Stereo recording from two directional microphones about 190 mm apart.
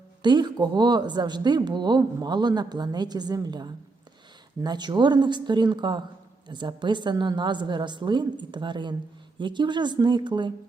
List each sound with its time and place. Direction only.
0.2 s speech: 25° right (ahead or behind)